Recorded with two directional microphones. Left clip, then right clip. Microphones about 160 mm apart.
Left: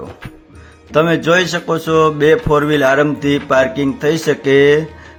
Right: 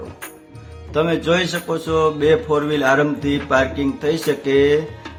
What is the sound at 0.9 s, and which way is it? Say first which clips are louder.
A man's voice: left 6 dB; 35° left (ahead or behind).